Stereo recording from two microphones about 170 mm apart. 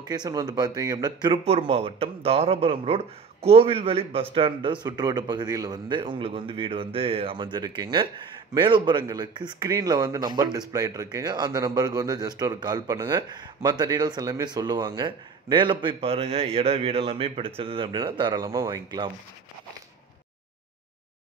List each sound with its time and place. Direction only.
0.1 s speech: 20° right (ahead or behind)